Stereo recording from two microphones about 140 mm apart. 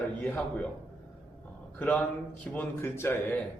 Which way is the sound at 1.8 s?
10° left (ahead or behind).